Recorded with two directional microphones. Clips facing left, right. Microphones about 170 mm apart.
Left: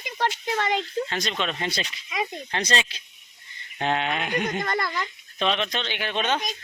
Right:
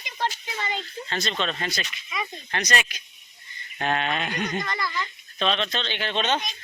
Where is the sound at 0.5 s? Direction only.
75° left (ahead or behind).